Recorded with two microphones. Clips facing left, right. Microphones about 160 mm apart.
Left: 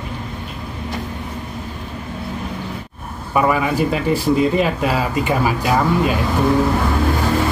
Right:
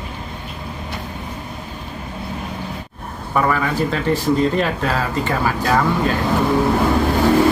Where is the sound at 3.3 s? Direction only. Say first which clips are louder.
Left 2 dB; 10° left (ahead or behind).